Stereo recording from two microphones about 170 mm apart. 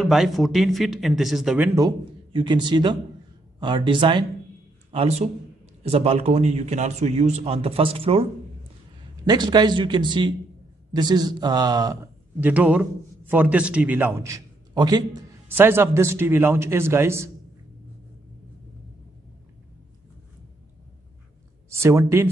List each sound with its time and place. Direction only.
0.0 s speech: centre (ahead or behind)
2.3 s a man's voice: 25° right (ahead or behind)
4.9 s a man's voice: 40° right (ahead or behind); by 12.0 s 25° right (ahead or behind)
12.4 s speech: 10° right (ahead or behind)
15.4 s speech: 15° right (ahead or behind)
21.6 s speech: 15° right (ahead or behind)